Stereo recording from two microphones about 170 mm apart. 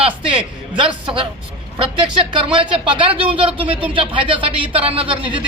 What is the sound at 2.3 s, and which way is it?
A man's voice, 30° right (ahead or behind).